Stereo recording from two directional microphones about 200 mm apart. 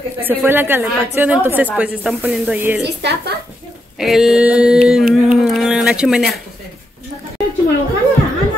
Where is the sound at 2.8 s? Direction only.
55° right (ahead or behind).